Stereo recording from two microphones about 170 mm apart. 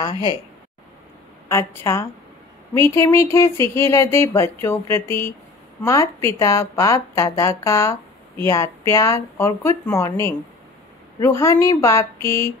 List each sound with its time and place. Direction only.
1.5 s a woman's voice: 15° left (ahead or behind)